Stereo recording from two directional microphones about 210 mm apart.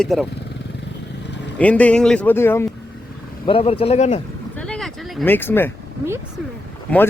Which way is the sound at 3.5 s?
25° left (ahead or behind).